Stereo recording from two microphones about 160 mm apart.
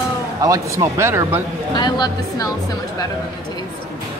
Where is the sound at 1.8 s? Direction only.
25° left (ahead or behind).